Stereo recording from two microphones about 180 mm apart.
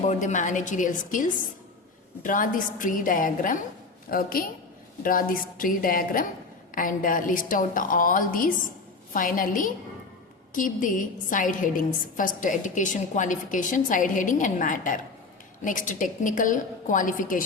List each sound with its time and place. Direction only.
0.1 s a woman's voice: 40° left (ahead or behind)